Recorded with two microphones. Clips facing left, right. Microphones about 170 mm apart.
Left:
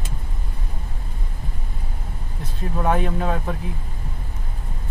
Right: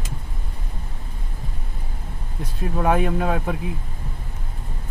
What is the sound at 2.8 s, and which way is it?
Speech, 10° right (ahead or behind).